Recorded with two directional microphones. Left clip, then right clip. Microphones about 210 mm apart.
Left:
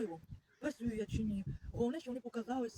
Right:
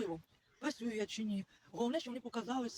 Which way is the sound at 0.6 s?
20° left (ahead or behind).